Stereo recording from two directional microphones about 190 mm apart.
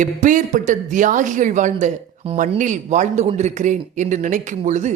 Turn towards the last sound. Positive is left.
turn(degrees=-40)  # may be behind; listen again after turning